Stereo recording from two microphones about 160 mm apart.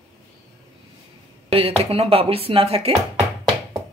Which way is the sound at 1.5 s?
40° right (ahead or behind).